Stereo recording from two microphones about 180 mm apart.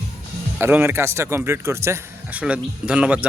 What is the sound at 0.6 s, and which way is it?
Speech, 10° right (ahead or behind).